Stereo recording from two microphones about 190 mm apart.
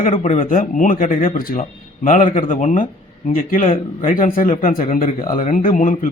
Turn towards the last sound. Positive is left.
turn(degrees=45)  # may be behind; listen again after turning